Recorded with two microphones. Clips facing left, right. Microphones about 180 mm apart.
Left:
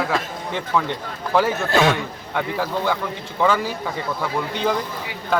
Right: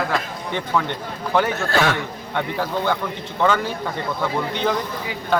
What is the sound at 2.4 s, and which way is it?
A man's voice, 5° left (ahead or behind).